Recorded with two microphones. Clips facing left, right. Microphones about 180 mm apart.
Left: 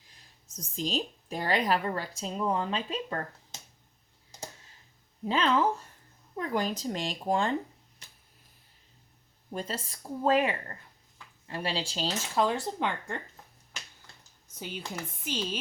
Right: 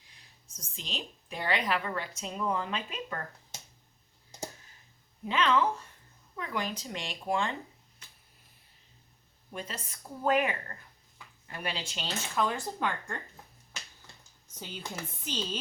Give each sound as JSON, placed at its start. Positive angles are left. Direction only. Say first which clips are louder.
{"t": 0.8, "sound": "speech", "louder": "left 10 dB", "side_deg": 40}
{"t": 5.2, "sound": "speech", "louder": "left 1 dB", "side_deg": 35}
{"t": 9.5, "sound": "speech", "louder": "left 5 dB", "side_deg": 35}
{"t": 14.6, "sound": "speech", "louder": "left 3 dB", "side_deg": 10}